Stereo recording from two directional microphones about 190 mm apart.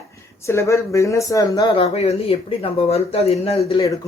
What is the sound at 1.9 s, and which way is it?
Speech, 30° left (ahead or behind).